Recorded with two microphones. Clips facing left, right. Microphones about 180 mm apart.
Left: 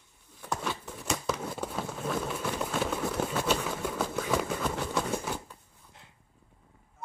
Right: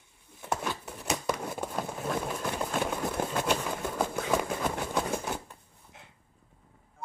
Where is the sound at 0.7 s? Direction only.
5° right (ahead or behind).